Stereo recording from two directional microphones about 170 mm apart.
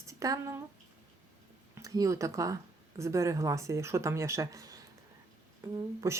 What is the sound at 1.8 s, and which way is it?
A woman's voice, 20° right (ahead or behind).